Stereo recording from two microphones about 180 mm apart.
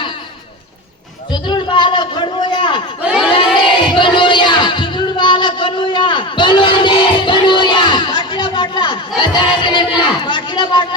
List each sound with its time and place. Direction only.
1.3 s a sound: 25° left (ahead or behind)
3.0 s crowd: 5° right (ahead or behind)
3.8 s music: 25° left (ahead or behind)